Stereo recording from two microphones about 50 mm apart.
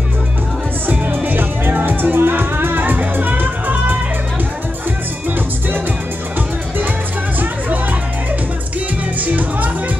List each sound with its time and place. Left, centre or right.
0.8 s music: right
9.2 s music: right